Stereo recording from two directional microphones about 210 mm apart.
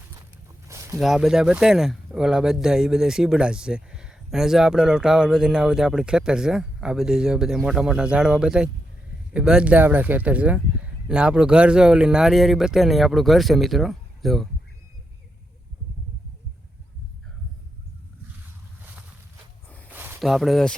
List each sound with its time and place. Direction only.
0.7 s a sound: 15° right (ahead or behind)
0.9 s speech: centre (ahead or behind)
19.9 s speech: 10° right (ahead or behind)